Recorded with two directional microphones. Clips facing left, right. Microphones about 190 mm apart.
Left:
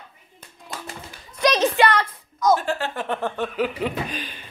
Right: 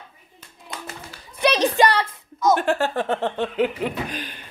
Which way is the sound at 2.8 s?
35° right (ahead or behind).